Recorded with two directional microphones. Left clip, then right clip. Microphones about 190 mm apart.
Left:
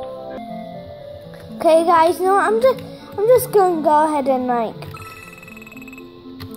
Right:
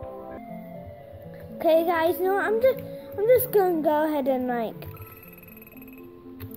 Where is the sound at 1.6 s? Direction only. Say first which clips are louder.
Left 8 dB; 5° right (ahead or behind).